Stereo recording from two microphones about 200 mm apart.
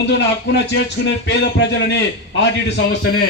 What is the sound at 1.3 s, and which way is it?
A man's voice, 60° left (ahead or behind).